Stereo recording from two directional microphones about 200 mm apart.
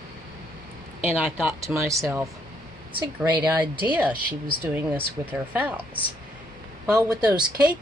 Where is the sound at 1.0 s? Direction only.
Centre (ahead or behind).